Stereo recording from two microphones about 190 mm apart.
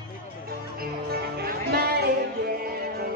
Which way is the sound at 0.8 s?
55° right (ahead or behind).